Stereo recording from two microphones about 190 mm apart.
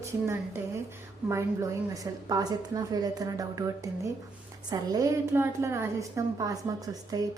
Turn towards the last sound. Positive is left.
turn(degrees=-20)  # may be behind; listen again after turning